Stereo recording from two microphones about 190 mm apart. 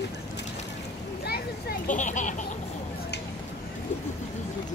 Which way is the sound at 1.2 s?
55° left (ahead or behind).